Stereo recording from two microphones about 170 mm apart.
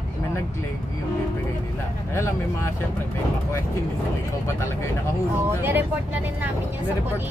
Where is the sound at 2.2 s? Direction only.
15° left (ahead or behind).